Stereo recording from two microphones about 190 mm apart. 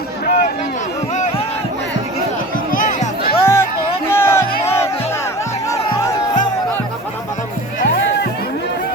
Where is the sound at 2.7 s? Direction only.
45° left (ahead or behind).